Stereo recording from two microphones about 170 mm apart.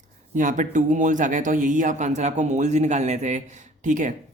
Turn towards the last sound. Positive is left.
turn(degrees=-50)  # may be behind; listen again after turning